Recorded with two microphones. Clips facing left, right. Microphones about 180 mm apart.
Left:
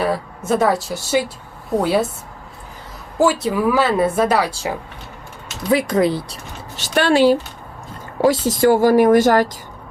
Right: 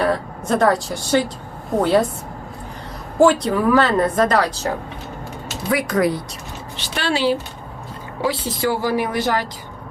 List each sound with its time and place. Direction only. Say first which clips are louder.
0.0 s a woman's voice: right 1 dB; 5° left (ahead or behind)
3.2 s a woman's voice: right 2 dB; 5° left (ahead or behind)
5.7 s speech: left 3 dB; 25° left (ahead or behind)
6.7 s a woman's voice: left 8 dB; 45° left (ahead or behind)